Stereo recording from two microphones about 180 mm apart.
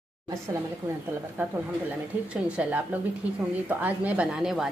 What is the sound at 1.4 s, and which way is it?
A woman's voice, 10° right (ahead or behind).